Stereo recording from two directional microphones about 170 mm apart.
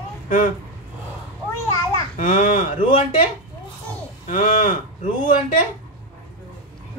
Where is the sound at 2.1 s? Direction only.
50° left (ahead or behind).